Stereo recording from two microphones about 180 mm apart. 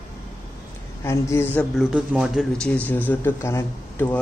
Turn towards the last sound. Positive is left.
turn(degrees=10)  # may be behind; listen again after turning